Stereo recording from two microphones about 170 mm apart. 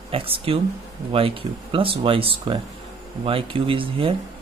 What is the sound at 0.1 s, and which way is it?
Speech, 35° right (ahead or behind).